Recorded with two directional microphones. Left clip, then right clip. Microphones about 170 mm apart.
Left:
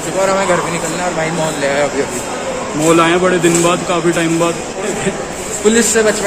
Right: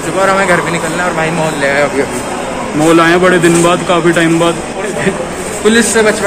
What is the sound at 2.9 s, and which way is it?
Speech, centre (ahead or behind).